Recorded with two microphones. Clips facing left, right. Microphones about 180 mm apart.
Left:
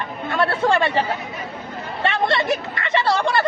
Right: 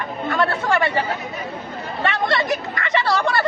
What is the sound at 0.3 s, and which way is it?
Speech, 25° left (ahead or behind).